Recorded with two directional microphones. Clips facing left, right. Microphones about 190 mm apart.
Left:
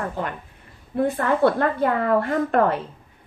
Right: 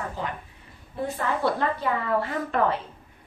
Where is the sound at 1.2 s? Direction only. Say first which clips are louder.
Left 5 dB; 55° left (ahead or behind).